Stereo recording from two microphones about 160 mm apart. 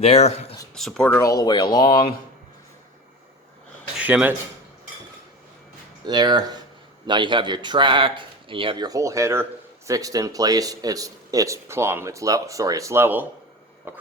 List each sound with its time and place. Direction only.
0.0 s speech: 40° left (ahead or behind)
0.7 s speech: 5° left (ahead or behind)
1.2 s speech: 20° left (ahead or behind)
3.9 s speech: 10° right (ahead or behind)
6.1 s speech: 25° right (ahead or behind)